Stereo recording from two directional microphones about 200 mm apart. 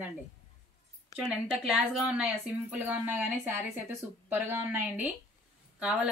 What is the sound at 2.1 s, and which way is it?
Speech, 5° right (ahead or behind).